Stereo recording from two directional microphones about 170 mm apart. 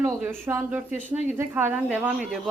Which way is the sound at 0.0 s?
10° right (ahead or behind).